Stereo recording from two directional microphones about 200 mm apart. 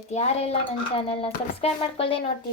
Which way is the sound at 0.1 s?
35° left (ahead or behind).